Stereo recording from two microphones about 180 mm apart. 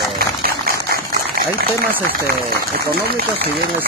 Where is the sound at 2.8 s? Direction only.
60° right (ahead or behind).